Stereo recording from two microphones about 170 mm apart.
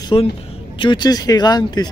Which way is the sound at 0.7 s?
30° left (ahead or behind).